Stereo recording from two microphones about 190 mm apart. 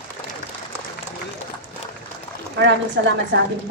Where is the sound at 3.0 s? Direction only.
70° right (ahead or behind).